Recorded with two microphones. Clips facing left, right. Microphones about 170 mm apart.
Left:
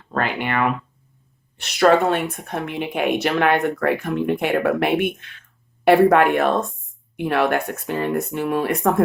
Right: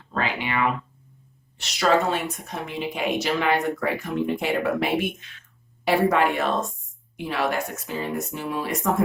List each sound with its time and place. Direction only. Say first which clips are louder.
0.1 s a woman's voice: left 4 dB; 55° left (ahead or behind)